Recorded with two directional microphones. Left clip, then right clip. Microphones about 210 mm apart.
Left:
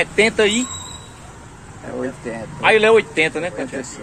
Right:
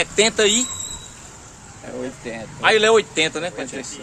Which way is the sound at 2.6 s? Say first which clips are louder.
Left 2 dB; 25° right (ahead or behind).